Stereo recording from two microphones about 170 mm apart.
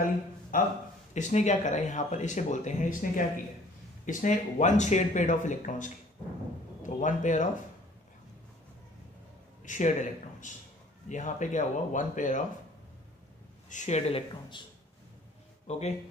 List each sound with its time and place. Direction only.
0.0 s speech: 55° left (ahead or behind)
9.7 s speech: 45° left (ahead or behind)
13.7 s speech: 45° left (ahead or behind)